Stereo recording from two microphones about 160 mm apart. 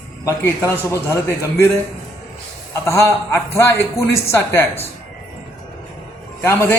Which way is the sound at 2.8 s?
15° left (ahead or behind).